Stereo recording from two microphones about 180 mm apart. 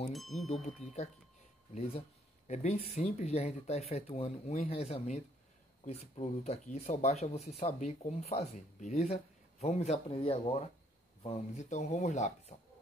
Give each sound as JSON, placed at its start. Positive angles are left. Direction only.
{"t": 0.1, "sound": "speech", "side_deg": 0}
{"t": 1.8, "sound": "speech", "side_deg": 35}